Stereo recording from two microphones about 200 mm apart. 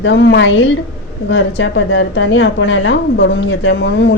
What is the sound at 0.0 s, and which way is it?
A woman's voice, 65° left (ahead or behind).